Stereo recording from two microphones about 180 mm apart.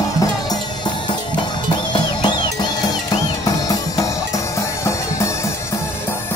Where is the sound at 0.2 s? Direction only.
20° left (ahead or behind).